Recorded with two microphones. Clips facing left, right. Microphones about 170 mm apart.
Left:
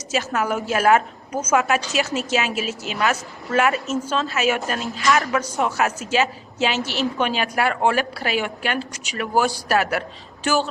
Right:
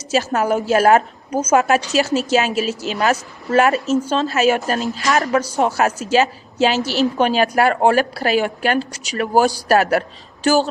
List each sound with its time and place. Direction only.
0.1 s a woman's voice: 35° right (ahead or behind)